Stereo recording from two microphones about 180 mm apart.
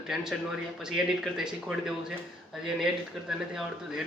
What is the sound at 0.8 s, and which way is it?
A man's voice, 5° right (ahead or behind).